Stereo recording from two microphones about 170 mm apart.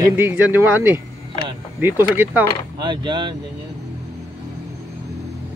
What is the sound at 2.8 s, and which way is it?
Speech, 25° right (ahead or behind).